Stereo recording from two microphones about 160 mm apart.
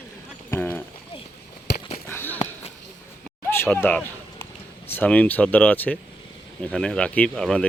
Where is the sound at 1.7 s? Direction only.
90° left.